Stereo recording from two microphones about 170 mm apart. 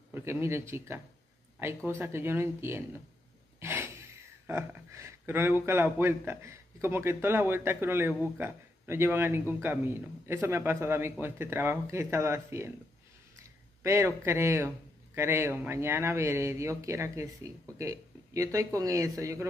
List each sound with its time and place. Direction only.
0.1 s a man's voice: 15° right (ahead or behind)
3.5 s a sound: 15° right (ahead or behind)
4.5 s a man's voice: 15° right (ahead or behind)